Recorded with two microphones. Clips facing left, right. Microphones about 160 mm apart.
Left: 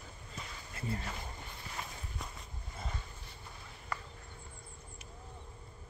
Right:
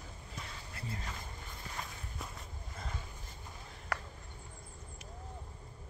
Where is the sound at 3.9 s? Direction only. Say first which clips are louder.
Right 2 dB; 75° right (ahead or behind).